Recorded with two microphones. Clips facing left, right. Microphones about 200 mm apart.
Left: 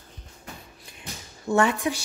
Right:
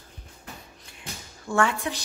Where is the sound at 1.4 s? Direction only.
20° left (ahead or behind).